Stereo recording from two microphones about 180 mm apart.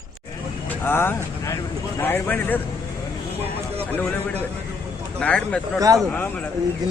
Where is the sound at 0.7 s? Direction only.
10° left (ahead or behind).